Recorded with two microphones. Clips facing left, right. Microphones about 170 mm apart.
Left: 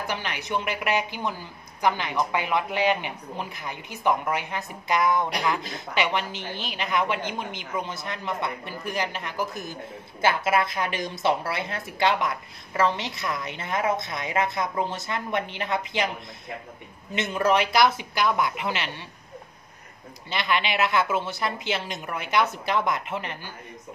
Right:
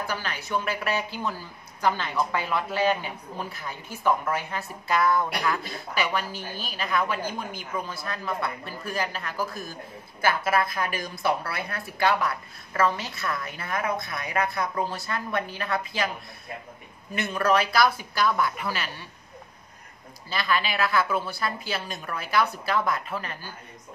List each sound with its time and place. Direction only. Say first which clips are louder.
0.0 s a woman's voice: left 1 dB; 20° left (ahead or behind)
17.1 s a woman's voice: left 1 dB; 20° left (ahead or behind)
20.2 s a woman's voice: left 1 dB; 20° left (ahead or behind)